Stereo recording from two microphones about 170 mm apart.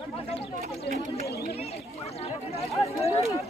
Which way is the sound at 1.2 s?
70° left (ahead or behind).